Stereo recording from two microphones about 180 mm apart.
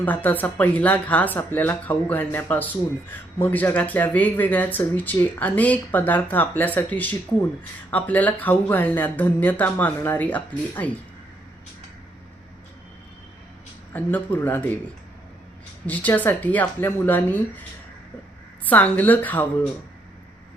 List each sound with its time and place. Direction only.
0.0 s speech: 10° left (ahead or behind)
13.9 s speech: 10° left (ahead or behind)
15.9 s speech: 10° left (ahead or behind)
18.6 s speech: 10° left (ahead or behind)